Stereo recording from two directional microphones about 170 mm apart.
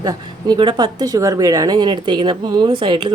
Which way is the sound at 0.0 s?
20° right (ahead or behind).